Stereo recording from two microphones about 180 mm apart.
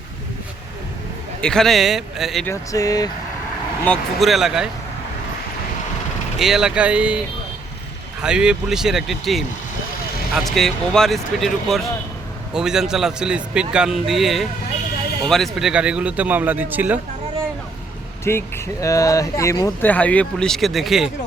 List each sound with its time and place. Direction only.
1.4 s a man's voice: 5° left (ahead or behind)
2.5 s speech: 20° left (ahead or behind)
3.8 s a man's voice: centre (ahead or behind)
6.4 s a man's voice: centre (ahead or behind)
8.2 s a man's voice: 5° right (ahead or behind)
18.3 s a man's voice: 15° left (ahead or behind)